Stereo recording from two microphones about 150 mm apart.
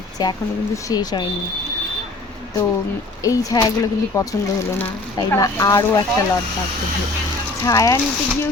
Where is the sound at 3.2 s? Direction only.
25° left (ahead or behind).